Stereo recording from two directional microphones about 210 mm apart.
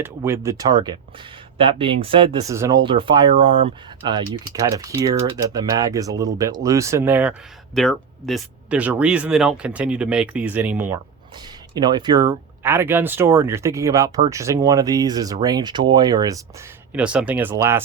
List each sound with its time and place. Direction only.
0.0 s speech: 10° right (ahead or behind)
2.5 s speech: 15° right (ahead or behind)
2.8 s speech: 25° right (ahead or behind); by 11.0 s 10° right (ahead or behind)
11.7 s speech: 20° right (ahead or behind)